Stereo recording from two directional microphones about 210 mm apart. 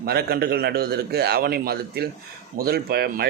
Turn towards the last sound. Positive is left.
turn(degrees=-50)  # may be behind; listen again after turning